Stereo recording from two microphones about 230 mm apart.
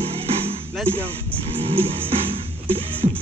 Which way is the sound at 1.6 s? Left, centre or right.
Right.